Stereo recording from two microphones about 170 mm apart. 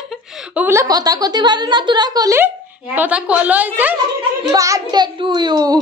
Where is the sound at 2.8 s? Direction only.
10° right (ahead or behind).